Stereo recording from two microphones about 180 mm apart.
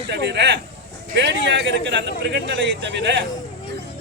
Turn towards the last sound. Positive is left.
turn(degrees=-75)  # may be behind; listen again after turning